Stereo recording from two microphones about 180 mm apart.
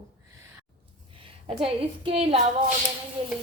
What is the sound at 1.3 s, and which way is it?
A woman's voice, 30° right (ahead or behind).